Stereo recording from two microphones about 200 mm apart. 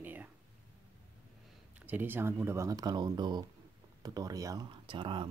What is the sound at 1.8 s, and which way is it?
Speech, 10° right (ahead or behind).